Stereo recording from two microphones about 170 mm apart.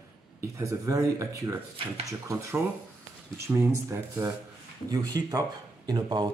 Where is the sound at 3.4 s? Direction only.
15° right (ahead or behind).